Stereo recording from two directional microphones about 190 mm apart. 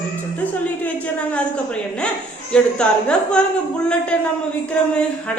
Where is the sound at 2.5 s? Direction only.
5° left (ahead or behind).